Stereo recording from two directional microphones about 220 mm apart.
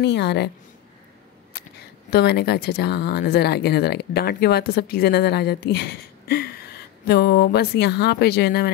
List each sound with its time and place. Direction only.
0.0 s speech: 50° left (ahead or behind)
2.0 s speech: 45° left (ahead or behind)